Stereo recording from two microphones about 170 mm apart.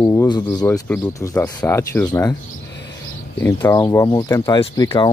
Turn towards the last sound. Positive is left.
turn(degrees=25)  # may be behind; listen again after turning